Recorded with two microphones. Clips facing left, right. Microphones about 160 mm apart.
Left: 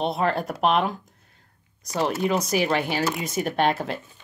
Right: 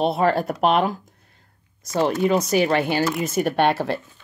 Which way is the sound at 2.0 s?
Centre (ahead or behind).